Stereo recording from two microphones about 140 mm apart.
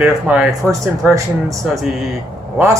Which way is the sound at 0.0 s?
5° right (ahead or behind).